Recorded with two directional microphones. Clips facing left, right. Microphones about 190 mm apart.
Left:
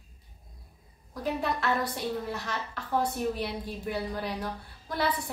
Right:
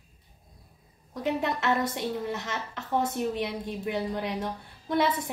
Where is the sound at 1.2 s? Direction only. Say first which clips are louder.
Right 2 dB; 20° right (ahead or behind).